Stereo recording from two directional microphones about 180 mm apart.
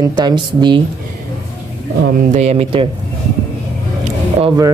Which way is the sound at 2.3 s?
40° right (ahead or behind).